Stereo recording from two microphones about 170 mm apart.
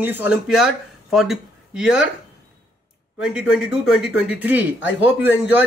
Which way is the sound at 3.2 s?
5° right (ahead or behind).